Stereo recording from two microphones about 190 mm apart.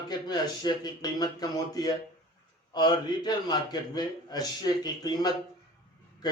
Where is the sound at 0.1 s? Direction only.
20° left (ahead or behind).